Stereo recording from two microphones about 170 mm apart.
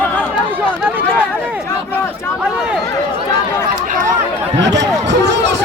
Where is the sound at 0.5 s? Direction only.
10° right (ahead or behind).